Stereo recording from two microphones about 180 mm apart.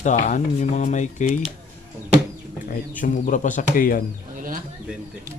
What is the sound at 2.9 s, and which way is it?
Speech, 45° left (ahead or behind).